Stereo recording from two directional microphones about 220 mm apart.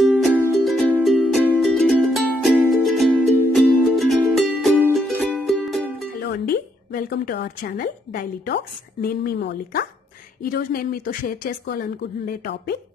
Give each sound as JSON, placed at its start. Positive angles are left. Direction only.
{"t": 0.0, "sound": "music", "side_deg": -5}
{"t": 6.1, "sound": "a woman's voice", "side_deg": 45}